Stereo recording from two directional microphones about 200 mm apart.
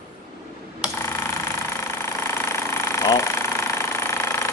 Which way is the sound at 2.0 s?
10° left (ahead or behind).